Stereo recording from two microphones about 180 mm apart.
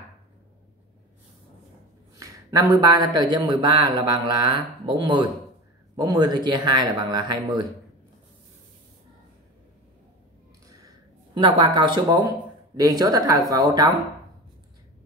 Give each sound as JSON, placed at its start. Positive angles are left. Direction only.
{"t": 2.1, "sound": "speech", "side_deg": -20}
{"t": 11.3, "sound": "speech", "side_deg": -25}